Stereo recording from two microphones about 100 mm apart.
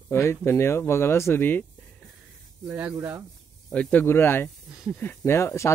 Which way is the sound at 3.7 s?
10° left (ahead or behind).